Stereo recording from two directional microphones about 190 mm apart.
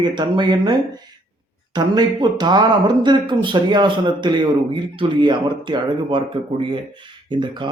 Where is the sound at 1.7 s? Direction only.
20° right (ahead or behind).